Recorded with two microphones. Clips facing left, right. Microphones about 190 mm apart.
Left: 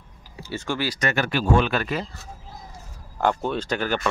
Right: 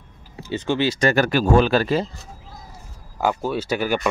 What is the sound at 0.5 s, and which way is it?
Speech, 20° right (ahead or behind).